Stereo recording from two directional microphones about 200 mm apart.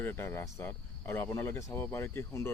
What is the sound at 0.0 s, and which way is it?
Speech, 10° left (ahead or behind).